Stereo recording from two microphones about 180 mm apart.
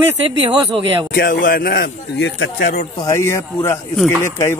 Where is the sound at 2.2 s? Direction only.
65° left (ahead or behind).